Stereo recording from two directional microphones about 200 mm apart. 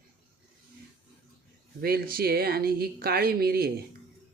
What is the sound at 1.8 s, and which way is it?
Speech, 50° right (ahead or behind).